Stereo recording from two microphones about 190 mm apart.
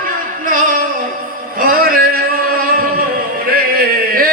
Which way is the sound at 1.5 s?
50° right (ahead or behind).